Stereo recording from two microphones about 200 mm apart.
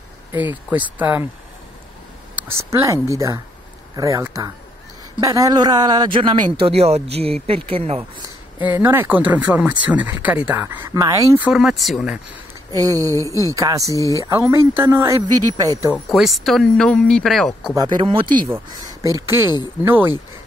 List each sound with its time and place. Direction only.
0.9 s speech: 10° right (ahead or behind)
2.3 s speech: 10° right (ahead or behind); by 8.0 s 30° right (ahead or behind)
8.6 s speech: 10° right (ahead or behind)
12.7 s speech: 15° right (ahead or behind)
13.1 s speech: 15° left (ahead or behind)
13.6 s speech: 15° right (ahead or behind)
15.9 s speech: centre (ahead or behind)
17.7 s speech: 20° right (ahead or behind)
19.1 s speech: 15° right (ahead or behind)